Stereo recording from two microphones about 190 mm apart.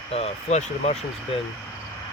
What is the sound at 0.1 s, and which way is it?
Speech, 35° left (ahead or behind).